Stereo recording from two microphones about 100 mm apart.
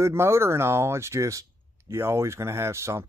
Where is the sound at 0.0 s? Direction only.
25° right (ahead or behind).